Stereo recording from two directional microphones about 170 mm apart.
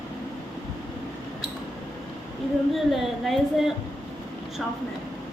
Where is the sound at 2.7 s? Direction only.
Centre (ahead or behind).